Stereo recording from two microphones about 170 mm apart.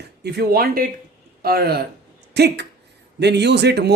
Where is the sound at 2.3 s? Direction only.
80° right.